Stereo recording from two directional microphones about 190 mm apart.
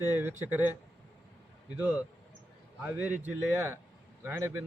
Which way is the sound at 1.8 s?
10° right (ahead or behind).